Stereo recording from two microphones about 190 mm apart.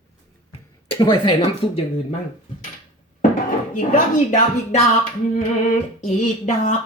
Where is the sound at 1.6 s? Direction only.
25° left (ahead or behind).